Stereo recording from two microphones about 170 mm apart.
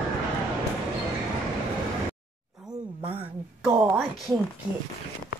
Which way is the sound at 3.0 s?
35° right (ahead or behind).